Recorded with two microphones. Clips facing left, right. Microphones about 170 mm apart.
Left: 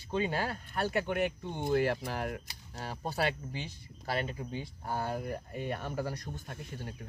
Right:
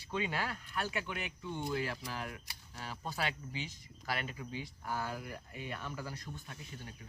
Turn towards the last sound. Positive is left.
turn(degrees=50)  # may be behind; listen again after turning